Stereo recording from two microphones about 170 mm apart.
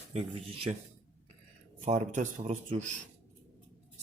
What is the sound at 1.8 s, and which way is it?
Speech, 40° right (ahead or behind).